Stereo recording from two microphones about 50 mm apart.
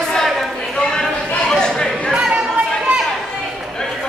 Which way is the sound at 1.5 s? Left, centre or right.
Centre.